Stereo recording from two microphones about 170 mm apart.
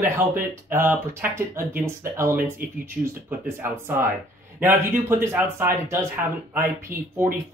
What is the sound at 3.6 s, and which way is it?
Speech, 15° right (ahead or behind).